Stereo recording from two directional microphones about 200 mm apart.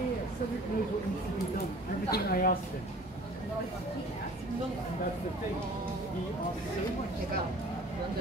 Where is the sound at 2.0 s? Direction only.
50° left (ahead or behind).